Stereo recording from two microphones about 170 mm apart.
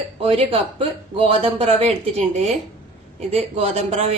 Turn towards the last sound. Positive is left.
turn(degrees=-40)  # may be behind; listen again after turning